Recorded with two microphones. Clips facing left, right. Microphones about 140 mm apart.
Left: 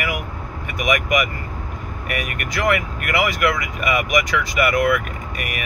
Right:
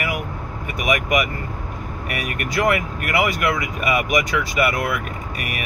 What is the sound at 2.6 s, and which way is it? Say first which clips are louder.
Speech: left 1 dB; 35° right (ahead or behind).